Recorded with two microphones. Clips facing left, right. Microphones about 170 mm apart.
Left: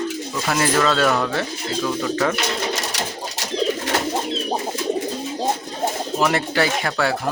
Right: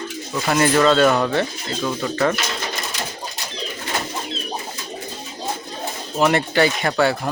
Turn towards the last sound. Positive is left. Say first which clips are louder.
# right 3 dB
turn(degrees=0)  # may be behind; listen again after turning